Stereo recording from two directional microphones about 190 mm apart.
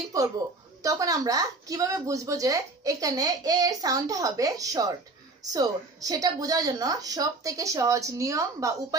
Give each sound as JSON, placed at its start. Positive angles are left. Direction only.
{"t": 0.1, "sound": "a woman's voice", "side_deg": -20}